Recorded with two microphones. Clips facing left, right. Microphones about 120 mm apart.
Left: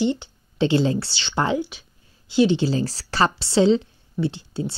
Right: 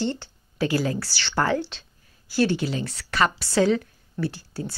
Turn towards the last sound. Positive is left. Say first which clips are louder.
# left 4 dB
turn(degrees=25)  # may be behind; listen again after turning